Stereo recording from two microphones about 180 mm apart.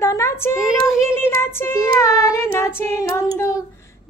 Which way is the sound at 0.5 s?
5° right (ahead or behind).